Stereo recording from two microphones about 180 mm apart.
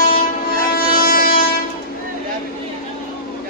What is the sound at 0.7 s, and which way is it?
Music, 55° left (ahead or behind).